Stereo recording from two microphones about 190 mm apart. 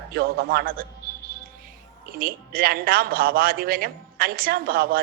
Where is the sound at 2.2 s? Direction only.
50° right (ahead or behind).